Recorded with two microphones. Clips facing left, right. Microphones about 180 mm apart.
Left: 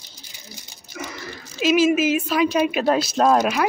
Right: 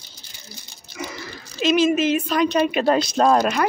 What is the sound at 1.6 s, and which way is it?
Speech, 5° left (ahead or behind).